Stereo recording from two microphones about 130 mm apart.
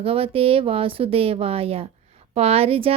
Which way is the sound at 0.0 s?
45° right (ahead or behind).